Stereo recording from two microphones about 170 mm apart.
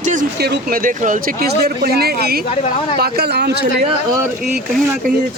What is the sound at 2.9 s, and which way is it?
Speech, 70° right (ahead or behind).